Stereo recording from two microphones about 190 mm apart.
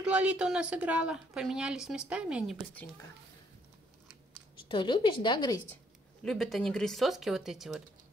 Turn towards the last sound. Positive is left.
turn(degrees=0)  # may be behind; listen again after turning